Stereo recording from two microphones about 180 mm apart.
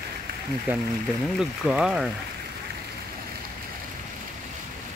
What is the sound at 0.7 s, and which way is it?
Speech, 10° right (ahead or behind).